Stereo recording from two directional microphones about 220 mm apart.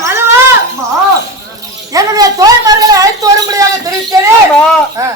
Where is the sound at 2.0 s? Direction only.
15° right (ahead or behind).